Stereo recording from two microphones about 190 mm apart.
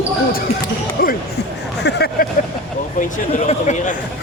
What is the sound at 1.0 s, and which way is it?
Speech, 50° left (ahead or behind).